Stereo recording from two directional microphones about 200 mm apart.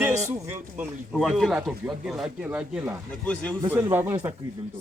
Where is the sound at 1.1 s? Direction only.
Centre (ahead or behind).